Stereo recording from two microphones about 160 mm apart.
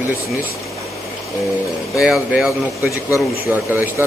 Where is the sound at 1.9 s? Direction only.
5° right (ahead or behind).